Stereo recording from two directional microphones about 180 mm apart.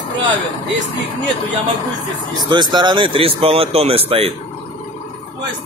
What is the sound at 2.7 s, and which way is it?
A man's voice, 25° right (ahead or behind).